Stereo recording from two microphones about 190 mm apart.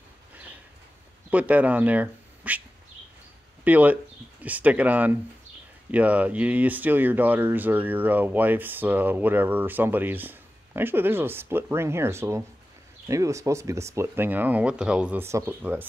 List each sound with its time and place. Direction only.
1.3 s speech: 10° right (ahead or behind)
3.6 s speech: 10° right (ahead or behind)